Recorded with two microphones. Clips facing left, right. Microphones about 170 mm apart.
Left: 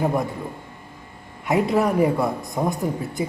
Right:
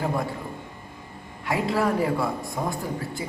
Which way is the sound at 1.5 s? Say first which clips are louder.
Left 4 dB; 20° left (ahead or behind).